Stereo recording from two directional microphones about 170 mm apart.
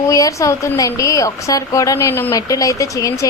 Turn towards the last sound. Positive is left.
turn(degrees=20)  # may be behind; listen again after turning